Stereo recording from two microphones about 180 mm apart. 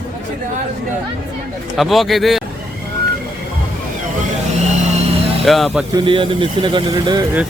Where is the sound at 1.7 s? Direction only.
Centre (ahead or behind).